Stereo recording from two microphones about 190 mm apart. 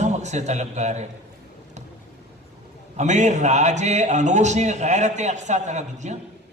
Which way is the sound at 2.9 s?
40° right (ahead or behind).